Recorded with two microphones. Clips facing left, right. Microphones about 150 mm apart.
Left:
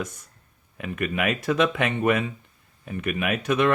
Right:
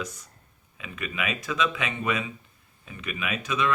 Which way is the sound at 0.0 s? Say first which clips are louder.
Left 3 dB; 55° left (ahead or behind).